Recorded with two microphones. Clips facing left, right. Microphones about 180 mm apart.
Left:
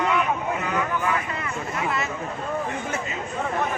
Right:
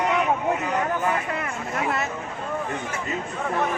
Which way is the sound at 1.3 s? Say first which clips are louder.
Right 1 dB; 55° right (ahead or behind).